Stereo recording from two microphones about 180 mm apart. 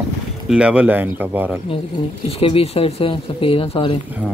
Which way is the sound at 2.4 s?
30° left (ahead or behind).